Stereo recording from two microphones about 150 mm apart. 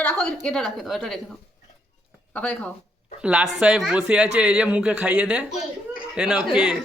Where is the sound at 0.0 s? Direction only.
5° left (ahead or behind).